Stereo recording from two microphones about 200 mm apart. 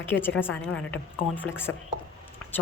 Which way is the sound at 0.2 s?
10° left (ahead or behind).